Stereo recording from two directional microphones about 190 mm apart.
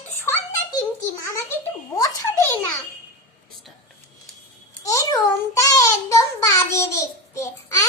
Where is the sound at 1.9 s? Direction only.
15° left (ahead or behind).